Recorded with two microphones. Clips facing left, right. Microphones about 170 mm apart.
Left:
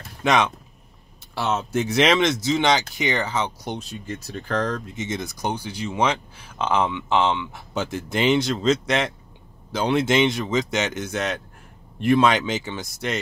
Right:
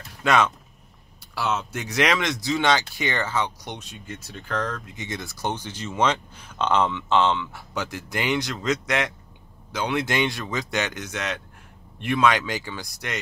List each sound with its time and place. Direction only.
0.2 s speech: 20° left (ahead or behind); by 4.8 s 35° left (ahead or behind)
4.9 s speech: 20° left (ahead or behind)